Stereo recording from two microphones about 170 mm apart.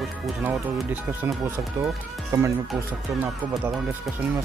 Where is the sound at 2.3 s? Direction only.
20° right (ahead or behind).